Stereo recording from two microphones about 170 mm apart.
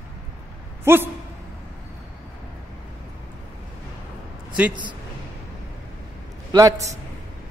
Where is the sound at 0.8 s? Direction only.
15° right (ahead or behind).